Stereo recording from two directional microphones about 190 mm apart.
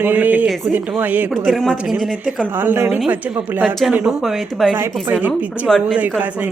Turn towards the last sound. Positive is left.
turn(degrees=-5)  # may be behind; listen again after turning